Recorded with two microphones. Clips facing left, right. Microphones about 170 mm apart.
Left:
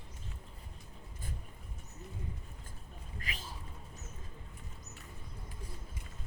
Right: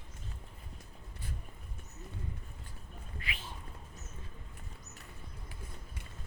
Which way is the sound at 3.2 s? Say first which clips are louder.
Right 1 dB; 40° left (ahead or behind).